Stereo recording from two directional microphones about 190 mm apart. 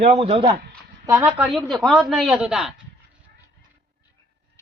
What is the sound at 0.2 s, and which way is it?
Speech, 30° right (ahead or behind).